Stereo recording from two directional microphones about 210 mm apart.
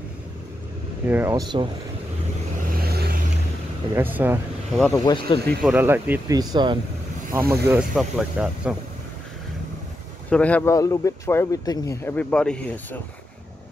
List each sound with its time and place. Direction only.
1.0 s speech: 10° right (ahead or behind)
2.8 s vehicle: 50° right (ahead or behind)
3.9 s speech: 10° right (ahead or behind)
4.7 s speech: 5° left (ahead or behind)
5.0 s speech: 25° left (ahead or behind)
5.6 s speech: 10° right (ahead or behind)
7.6 s speech: 5° right (ahead or behind)
10.3 s speech: 5° left (ahead or behind)